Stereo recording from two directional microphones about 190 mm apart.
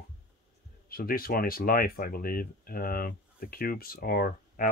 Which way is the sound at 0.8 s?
50° left (ahead or behind).